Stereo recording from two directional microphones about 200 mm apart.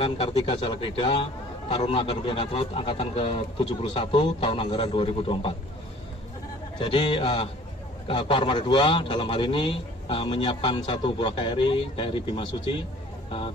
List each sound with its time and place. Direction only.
0.0 s a man's voice: 25° left (ahead or behind)
6.8 s a man's voice: 25° left (ahead or behind)